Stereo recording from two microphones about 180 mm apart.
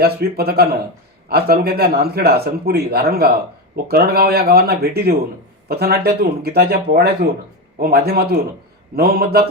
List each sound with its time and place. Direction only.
0.0 s a man's voice: 60° right (ahead or behind)